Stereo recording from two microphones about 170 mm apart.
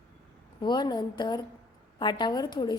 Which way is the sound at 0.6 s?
25° left (ahead or behind).